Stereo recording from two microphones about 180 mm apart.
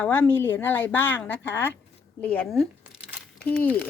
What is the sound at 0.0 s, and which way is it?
Speech, 10° left (ahead or behind).